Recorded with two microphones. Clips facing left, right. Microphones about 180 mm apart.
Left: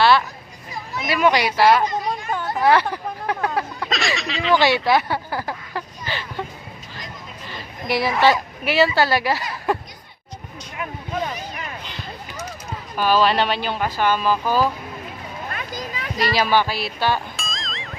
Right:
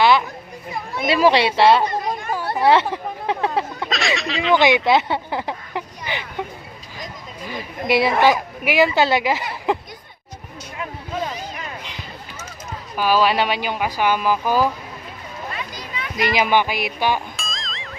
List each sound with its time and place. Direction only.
0.0 s children playing: 15° right (ahead or behind)
1.0 s speech: 30° right (ahead or behind)
3.8 s a sound: centre (ahead or behind)
4.9 s speech: 20° right (ahead or behind)
7.9 s speech: 25° right (ahead or behind)
13.0 s speech: 10° right (ahead or behind)
15.4 s children playing: 50° left (ahead or behind)
16.3 s speech: 15° right (ahead or behind)
17.3 s music: centre (ahead or behind)